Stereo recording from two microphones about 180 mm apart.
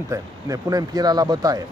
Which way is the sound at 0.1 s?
20° right (ahead or behind).